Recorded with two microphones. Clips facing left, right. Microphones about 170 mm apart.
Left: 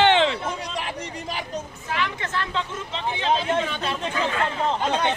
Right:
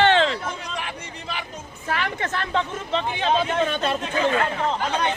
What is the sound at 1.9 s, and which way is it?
Speech, 55° right (ahead or behind).